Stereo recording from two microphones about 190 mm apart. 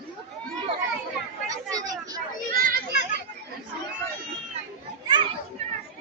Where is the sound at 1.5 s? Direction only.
20° right (ahead or behind).